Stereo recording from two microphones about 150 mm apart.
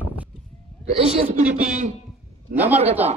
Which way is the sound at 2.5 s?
10° right (ahead or behind).